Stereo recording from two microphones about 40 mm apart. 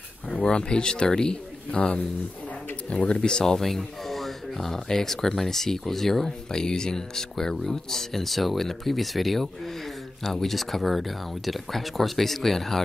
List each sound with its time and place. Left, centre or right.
0.5 s speech: left
3.2 s speech: centre
3.5 s speech: centre